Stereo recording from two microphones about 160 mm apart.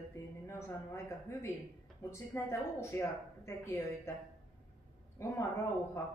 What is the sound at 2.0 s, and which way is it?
Speech, 15° left (ahead or behind).